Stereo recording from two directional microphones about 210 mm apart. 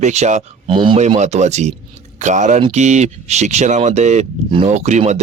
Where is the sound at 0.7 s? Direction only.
25° right (ahead or behind).